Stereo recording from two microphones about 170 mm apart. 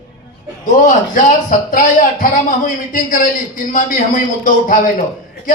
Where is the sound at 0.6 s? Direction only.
50° left (ahead or behind).